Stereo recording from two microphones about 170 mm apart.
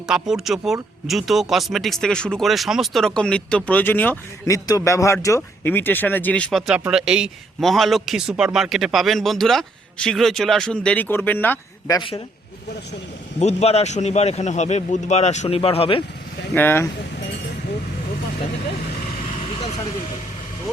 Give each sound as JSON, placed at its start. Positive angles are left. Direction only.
{"t": 0.1, "sound": "speech", "side_deg": -5}
{"t": 11.9, "sound": "speech", "side_deg": 25}
{"t": 13.4, "sound": "a man's voice", "side_deg": 40}
{"t": 16.6, "sound": "speech", "side_deg": 10}